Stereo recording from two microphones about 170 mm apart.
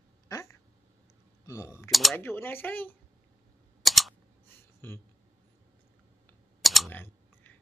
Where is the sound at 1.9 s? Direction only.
Centre (ahead or behind).